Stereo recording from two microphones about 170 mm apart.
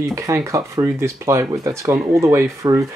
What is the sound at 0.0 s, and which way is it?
Speech, 15° right (ahead or behind).